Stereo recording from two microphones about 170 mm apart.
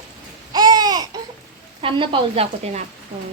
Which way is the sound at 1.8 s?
30° right (ahead or behind).